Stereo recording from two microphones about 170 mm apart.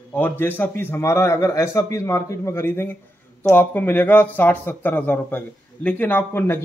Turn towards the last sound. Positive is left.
turn(degrees=15)  # may be behind; listen again after turning